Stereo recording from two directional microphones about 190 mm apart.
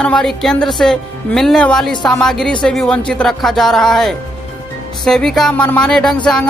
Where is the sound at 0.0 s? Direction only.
5° left (ahead or behind).